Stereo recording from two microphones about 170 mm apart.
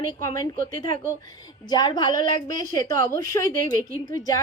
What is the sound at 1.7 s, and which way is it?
A woman's voice, 25° left (ahead or behind).